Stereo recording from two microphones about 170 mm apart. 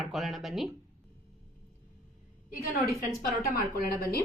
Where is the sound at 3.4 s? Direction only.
60° left (ahead or behind).